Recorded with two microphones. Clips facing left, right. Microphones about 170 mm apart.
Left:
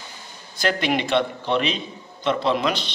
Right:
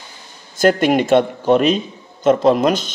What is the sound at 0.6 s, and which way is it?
A man's voice, 45° right (ahead or behind).